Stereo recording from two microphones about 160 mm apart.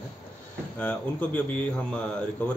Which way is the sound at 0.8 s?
10° left (ahead or behind).